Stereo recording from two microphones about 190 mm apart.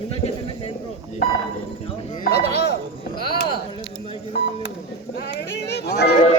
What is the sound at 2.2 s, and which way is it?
Speech, 60° left (ahead or behind).